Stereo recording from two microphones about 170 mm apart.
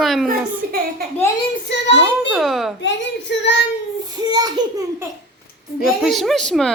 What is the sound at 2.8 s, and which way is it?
Speech, 90° left.